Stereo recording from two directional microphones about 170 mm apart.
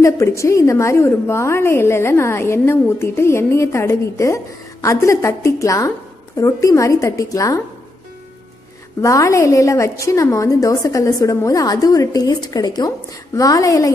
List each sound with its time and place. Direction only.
0.0 s a woman's voice: 15° left (ahead or behind)
9.0 s a woman's voice: 20° left (ahead or behind)